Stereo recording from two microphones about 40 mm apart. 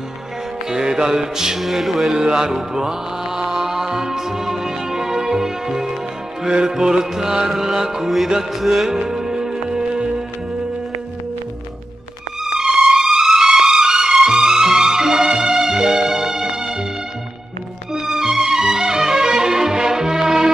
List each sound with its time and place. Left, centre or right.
0.7 s music: centre
1.6 s music: centre
2.1 s music: centre
9.1 s music: centre
12.5 s music: centre
17.9 s music: centre